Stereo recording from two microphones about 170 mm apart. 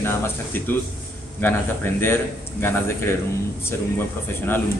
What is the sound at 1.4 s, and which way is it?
A man's voice, 10° left (ahead or behind).